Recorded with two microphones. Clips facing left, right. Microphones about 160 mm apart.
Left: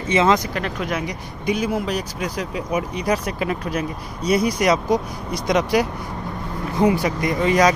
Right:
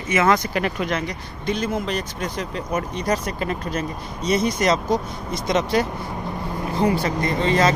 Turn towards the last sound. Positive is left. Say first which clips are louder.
# left 2 dB
turn(degrees=15)  # may be behind; listen again after turning